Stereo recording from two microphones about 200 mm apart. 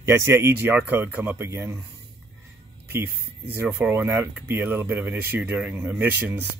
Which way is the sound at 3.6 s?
10° right (ahead or behind).